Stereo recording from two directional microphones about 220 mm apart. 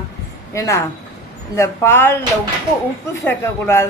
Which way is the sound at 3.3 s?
10° left (ahead or behind).